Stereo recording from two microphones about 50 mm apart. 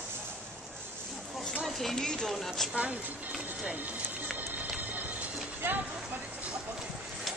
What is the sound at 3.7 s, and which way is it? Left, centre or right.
Music, right.